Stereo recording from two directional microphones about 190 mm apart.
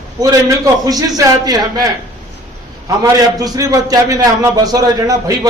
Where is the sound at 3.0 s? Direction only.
20° right (ahead or behind).